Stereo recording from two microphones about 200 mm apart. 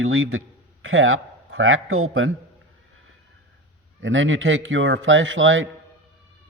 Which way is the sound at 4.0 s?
75° right (ahead or behind).